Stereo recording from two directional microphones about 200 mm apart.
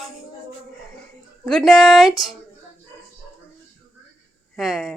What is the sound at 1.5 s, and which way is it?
Speech, centre (ahead or behind).